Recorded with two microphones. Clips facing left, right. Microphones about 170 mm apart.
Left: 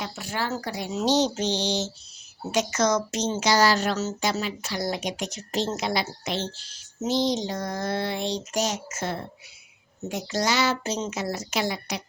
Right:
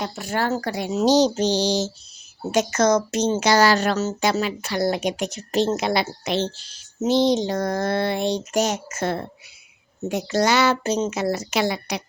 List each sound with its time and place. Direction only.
0.0 s speech: 45° right (ahead or behind)
1.0 s mantra: 40° right (ahead or behind)
2.5 s a woman's voice: 50° right (ahead or behind); by 12.0 s 70° right (ahead or behind)